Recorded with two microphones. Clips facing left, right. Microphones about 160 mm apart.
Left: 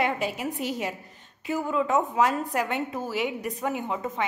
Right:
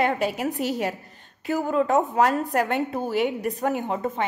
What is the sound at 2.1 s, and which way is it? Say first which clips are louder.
Speech: right 3 dB; 55° right (ahead or behind).